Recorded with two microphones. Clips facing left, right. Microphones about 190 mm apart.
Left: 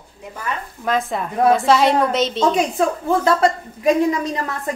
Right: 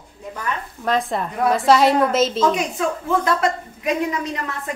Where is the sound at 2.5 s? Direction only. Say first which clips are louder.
Left 3 dB; 35° left (ahead or behind).